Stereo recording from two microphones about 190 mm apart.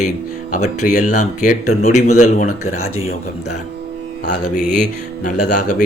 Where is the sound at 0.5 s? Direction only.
40° left (ahead or behind).